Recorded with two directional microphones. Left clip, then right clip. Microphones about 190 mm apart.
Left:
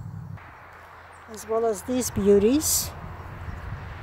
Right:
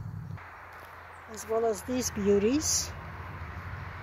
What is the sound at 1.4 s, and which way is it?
Speech, 20° left (ahead or behind).